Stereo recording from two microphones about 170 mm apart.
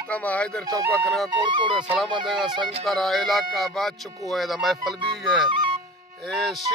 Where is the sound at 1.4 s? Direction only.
30° right (ahead or behind).